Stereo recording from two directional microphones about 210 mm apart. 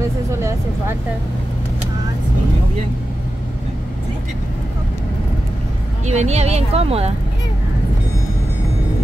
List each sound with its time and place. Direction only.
0.4 s speech: 15° right (ahead or behind)
6.0 s speech: 30° right (ahead or behind)